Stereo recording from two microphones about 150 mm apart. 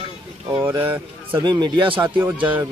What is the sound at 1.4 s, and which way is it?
Speech, 30° right (ahead or behind).